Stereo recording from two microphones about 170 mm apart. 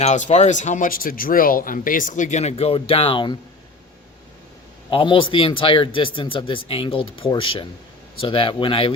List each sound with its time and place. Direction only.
0.0 s speech: 45° left (ahead or behind)
4.9 s speech: 30° left (ahead or behind)